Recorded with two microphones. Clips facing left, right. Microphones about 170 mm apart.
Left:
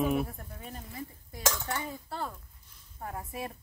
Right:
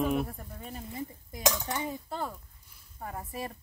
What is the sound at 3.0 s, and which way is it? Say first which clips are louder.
Speech: even; centre (ahead or behind).